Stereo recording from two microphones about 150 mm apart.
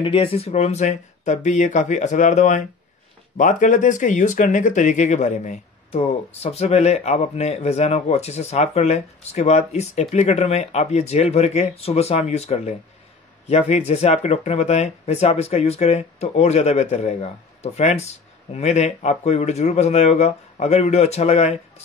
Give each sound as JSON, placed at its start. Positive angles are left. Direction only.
{"t": 0.0, "sound": "speech", "side_deg": 35}